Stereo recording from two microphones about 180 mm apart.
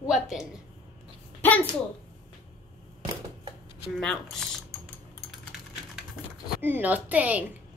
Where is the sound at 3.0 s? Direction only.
25° right (ahead or behind).